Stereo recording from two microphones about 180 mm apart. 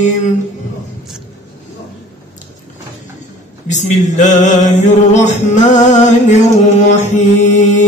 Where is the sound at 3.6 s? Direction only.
40° left (ahead or behind).